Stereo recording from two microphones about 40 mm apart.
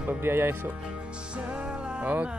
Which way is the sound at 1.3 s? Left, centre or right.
Right.